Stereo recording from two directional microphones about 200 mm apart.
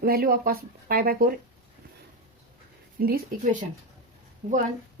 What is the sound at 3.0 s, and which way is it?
Speech, 50° right (ahead or behind).